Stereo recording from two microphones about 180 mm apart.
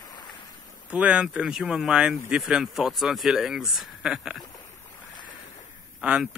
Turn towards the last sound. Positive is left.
turn(degrees=-5)  # may be behind; listen again after turning